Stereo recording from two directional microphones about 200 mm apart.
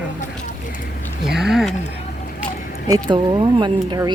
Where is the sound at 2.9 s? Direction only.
20° right (ahead or behind).